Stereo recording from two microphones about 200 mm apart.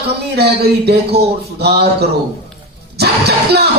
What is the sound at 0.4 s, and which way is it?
A man's voice, 55° right (ahead or behind).